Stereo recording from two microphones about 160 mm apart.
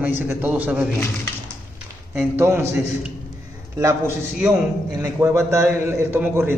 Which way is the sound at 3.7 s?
20° right (ahead or behind).